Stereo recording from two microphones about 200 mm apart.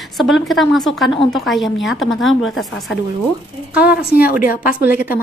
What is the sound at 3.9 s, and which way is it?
A woman's voice, 50° left (ahead or behind).